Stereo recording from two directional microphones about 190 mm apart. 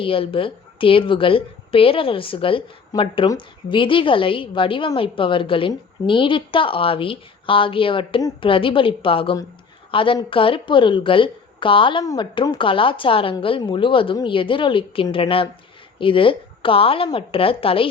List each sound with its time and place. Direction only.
0.0 s a woman's voice: 30° left (ahead or behind)